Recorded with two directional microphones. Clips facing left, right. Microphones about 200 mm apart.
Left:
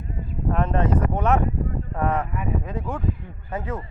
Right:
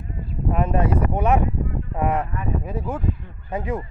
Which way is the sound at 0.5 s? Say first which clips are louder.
Right 1 dB; 10° right (ahead or behind).